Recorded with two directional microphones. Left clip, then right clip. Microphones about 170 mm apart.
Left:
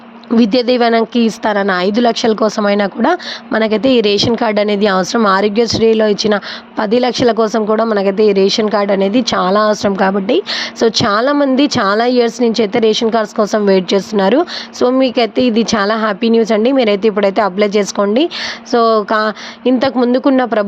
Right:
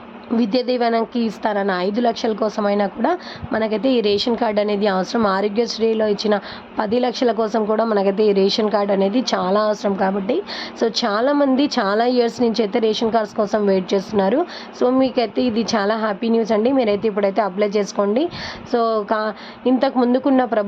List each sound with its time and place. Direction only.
0.3 s a woman's voice: 20° left (ahead or behind)